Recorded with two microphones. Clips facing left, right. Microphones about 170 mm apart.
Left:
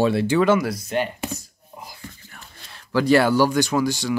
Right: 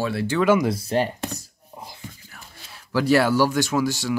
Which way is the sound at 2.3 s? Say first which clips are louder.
Even; 5° right (ahead or behind).